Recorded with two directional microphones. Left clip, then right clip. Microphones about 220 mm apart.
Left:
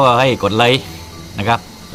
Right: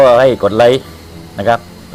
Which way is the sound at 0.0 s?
45° left (ahead or behind).